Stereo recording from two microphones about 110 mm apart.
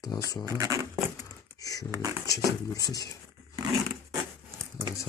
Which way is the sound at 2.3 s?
30° left (ahead or behind).